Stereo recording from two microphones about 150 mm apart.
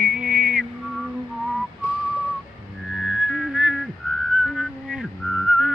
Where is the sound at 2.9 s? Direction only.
Centre (ahead or behind).